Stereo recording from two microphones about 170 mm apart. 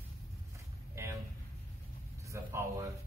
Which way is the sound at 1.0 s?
15° right (ahead or behind).